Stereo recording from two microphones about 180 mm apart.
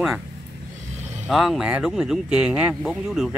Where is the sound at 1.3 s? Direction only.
Centre (ahead or behind).